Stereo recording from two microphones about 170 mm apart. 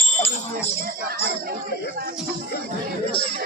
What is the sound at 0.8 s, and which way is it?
Music, 60° right (ahead or behind).